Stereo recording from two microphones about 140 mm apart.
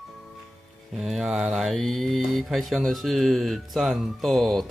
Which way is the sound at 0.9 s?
Centre (ahead or behind).